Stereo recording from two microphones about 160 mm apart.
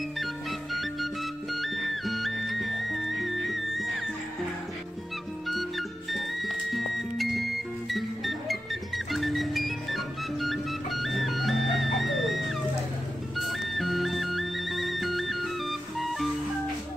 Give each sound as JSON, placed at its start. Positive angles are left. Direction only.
{"t": 0.2, "sound": "music", "side_deg": 0}
{"t": 5.5, "sound": "music", "side_deg": 0}